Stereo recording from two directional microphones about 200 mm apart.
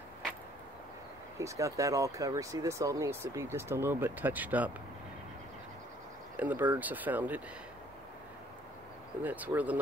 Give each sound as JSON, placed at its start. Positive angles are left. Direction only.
{"t": 1.4, "sound": "speech", "side_deg": -15}
{"t": 6.3, "sound": "speech", "side_deg": -10}
{"t": 9.2, "sound": "speech", "side_deg": -10}